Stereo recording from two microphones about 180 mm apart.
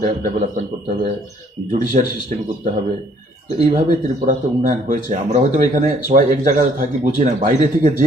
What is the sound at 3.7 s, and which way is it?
A man's voice, 50° right (ahead or behind).